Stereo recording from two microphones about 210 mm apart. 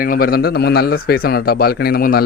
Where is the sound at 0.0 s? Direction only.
45° left (ahead or behind).